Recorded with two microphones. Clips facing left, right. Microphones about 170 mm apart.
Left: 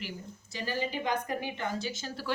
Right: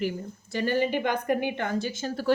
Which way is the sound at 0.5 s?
60° right (ahead or behind).